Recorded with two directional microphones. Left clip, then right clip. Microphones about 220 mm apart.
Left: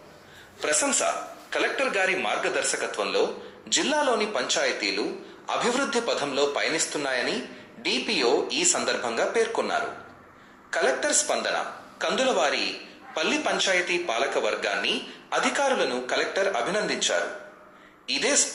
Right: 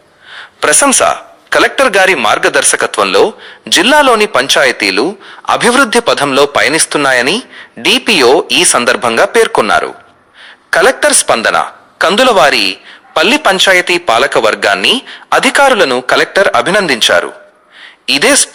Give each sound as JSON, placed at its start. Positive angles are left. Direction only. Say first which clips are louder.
{"t": 0.3, "sound": "a man's voice", "louder": "right 16 dB", "side_deg": -45}